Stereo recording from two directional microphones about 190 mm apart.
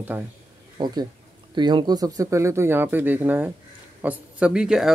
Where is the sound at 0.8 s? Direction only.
20° right (ahead or behind).